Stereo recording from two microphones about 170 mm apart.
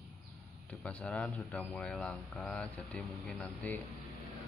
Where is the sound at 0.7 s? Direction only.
10° left (ahead or behind).